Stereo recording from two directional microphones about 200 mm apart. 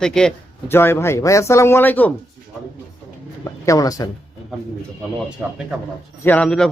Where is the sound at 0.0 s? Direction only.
5° left (ahead or behind).